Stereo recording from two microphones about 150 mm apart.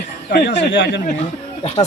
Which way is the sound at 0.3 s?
70° left (ahead or behind).